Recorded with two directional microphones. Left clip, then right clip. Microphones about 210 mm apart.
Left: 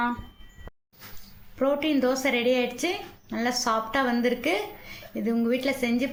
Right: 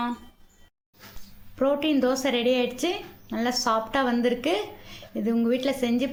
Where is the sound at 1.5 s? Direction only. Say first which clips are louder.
Right 1 dB; 15° right (ahead or behind).